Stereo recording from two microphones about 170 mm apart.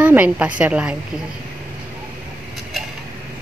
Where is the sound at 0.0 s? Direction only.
10° right (ahead or behind).